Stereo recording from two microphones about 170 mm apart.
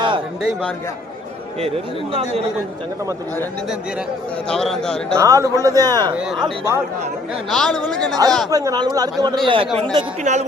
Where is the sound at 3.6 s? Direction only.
5° right (ahead or behind).